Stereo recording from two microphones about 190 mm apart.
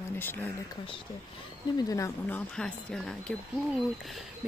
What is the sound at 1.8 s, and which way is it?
Speech, 15° left (ahead or behind).